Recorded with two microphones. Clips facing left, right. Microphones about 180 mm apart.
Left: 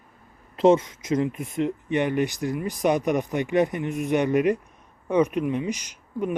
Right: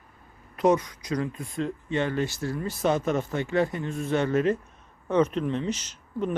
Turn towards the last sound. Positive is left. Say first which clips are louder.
# left 1 dB
turn(degrees=10)  # may be behind; listen again after turning